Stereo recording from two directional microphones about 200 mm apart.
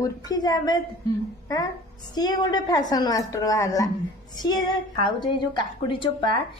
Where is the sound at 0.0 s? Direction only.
20° left (ahead or behind).